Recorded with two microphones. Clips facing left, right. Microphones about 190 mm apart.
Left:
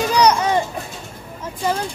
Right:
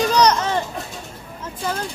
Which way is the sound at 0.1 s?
10° left (ahead or behind).